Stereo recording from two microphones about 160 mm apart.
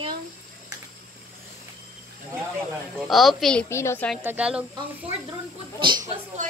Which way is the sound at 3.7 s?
15° left (ahead or behind).